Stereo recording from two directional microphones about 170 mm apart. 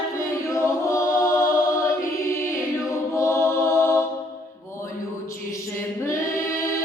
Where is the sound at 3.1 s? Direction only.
15° left (ahead or behind).